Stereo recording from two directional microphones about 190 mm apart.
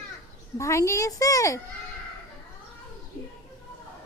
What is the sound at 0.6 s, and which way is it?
A woman's voice, 15° left (ahead or behind).